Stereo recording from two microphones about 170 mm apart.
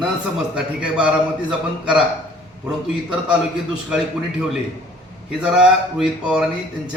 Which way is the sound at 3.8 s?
5° right (ahead or behind).